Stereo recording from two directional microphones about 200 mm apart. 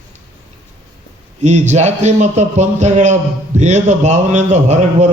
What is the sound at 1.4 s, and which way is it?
Speech, 35° right (ahead or behind).